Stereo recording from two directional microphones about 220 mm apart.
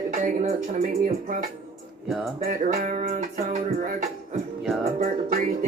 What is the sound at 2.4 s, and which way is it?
Music, 35° right (ahead or behind).